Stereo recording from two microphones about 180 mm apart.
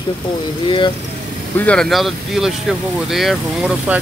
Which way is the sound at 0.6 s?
25° left (ahead or behind).